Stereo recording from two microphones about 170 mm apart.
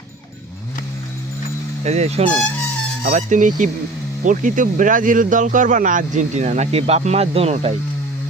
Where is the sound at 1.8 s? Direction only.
40° right (ahead or behind).